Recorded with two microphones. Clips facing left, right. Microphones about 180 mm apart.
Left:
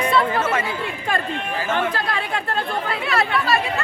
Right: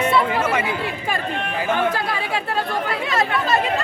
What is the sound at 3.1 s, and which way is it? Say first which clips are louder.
Speech: left 1 dB; 20° right (ahead or behind).